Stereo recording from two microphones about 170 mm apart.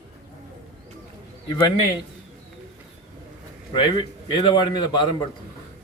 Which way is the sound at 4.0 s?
25° left (ahead or behind).